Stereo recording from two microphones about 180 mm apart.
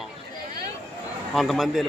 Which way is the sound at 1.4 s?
Centre (ahead or behind).